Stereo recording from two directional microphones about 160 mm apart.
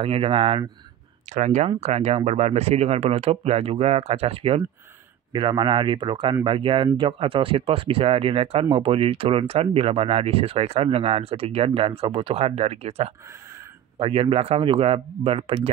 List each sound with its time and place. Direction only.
0.0 s speech: 35° right (ahead or behind)
1.3 s speech: 45° right (ahead or behind)